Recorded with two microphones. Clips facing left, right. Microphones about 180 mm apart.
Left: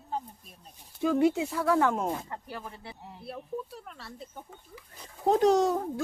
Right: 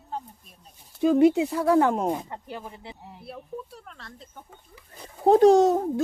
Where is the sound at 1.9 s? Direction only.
20° right (ahead or behind).